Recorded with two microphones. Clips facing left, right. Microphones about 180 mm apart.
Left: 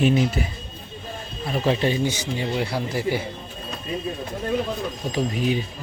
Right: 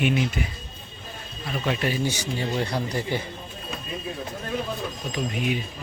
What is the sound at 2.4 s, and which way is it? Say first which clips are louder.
Speech: left 1 dB; 10° left (ahead or behind).